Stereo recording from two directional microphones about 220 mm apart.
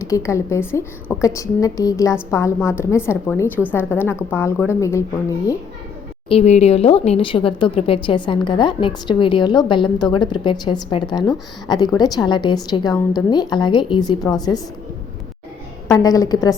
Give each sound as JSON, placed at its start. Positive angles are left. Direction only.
{"t": 0.0, "sound": "a woman's voice", "side_deg": 15}
{"t": 6.2, "sound": "speech", "side_deg": 30}
{"t": 15.9, "sound": "a woman's voice", "side_deg": 15}